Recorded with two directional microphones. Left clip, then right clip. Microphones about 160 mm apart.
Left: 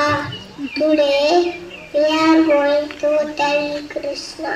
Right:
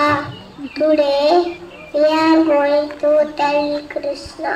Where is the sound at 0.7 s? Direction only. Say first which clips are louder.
Right 1 dB; 45° left (ahead or behind).